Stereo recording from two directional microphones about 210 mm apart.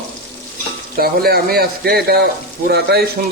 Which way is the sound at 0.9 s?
45° right (ahead or behind).